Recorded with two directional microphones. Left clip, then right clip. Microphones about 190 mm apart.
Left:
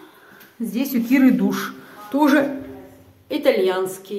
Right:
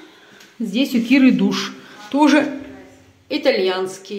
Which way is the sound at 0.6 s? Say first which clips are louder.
Right 2 dB; 35° right (ahead or behind).